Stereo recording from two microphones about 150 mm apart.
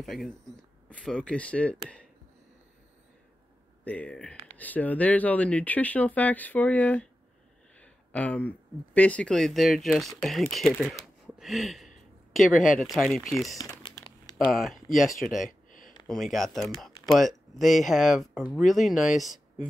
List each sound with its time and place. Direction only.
0.0 s speech: centre (ahead or behind)
3.8 s speech: 10° left (ahead or behind)
12.5 s speech: 60° left (ahead or behind)
12.8 s speech: centre (ahead or behind)
13.6 s typing: 30° left (ahead or behind)
14.5 s speech: centre (ahead or behind)
15.3 s a sound: 60° left (ahead or behind)
16.1 s speech: centre (ahead or behind)